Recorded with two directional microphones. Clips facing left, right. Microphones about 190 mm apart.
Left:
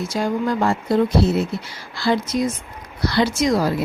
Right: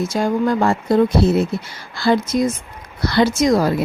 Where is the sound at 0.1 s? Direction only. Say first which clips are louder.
Right 1 dB; 50° right (ahead or behind).